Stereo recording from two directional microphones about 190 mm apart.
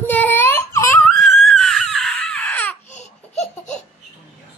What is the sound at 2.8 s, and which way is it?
Laughter, 35° left (ahead or behind).